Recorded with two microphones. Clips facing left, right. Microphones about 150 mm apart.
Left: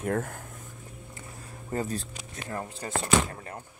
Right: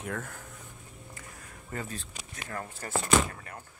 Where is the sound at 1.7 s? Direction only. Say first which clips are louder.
Left 7 dB; 35° left (ahead or behind).